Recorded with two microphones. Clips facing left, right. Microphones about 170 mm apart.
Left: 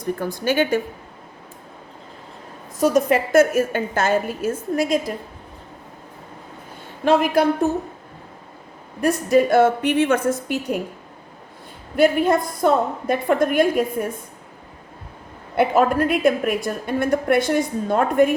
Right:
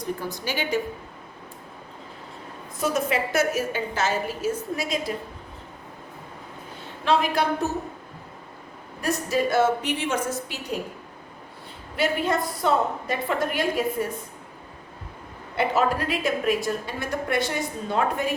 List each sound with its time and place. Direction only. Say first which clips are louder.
0.0 s a woman's voice: left 6 dB; 55° left (ahead or behind)
2.9 s a woman's voice: left 8 dB; 50° left (ahead or behind)
7.0 s a woman's voice: left 6 dB; 50° left (ahead or behind)
9.0 s a woman's voice: left 8 dB; 55° left (ahead or behind)
11.9 s a woman's voice: left 7 dB; 50° left (ahead or behind)
15.5 s a woman's voice: left 6 dB; 50° left (ahead or behind)